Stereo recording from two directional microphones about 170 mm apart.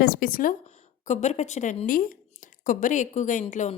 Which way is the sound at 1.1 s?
40° left (ahead or behind).